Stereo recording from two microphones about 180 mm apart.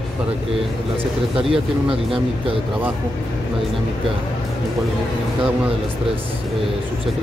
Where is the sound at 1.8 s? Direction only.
30° right (ahead or behind).